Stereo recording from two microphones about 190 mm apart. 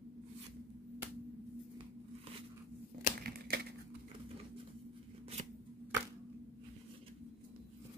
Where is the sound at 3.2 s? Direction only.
55° right (ahead or behind).